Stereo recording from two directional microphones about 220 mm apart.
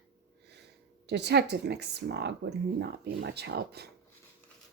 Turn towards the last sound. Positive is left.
turn(degrees=-45)  # may be behind; listen again after turning